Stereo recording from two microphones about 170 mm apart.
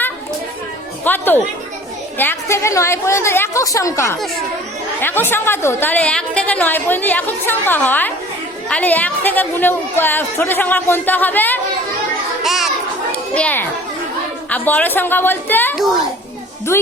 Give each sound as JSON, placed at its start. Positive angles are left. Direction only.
{"t": 1.0, "sound": "a woman's voice", "side_deg": 10}
{"t": 12.4, "sound": "children playing", "side_deg": 0}
{"t": 13.3, "sound": "a woman's voice", "side_deg": 10}